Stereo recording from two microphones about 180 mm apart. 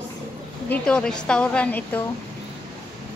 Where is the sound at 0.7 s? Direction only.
5° left (ahead or behind).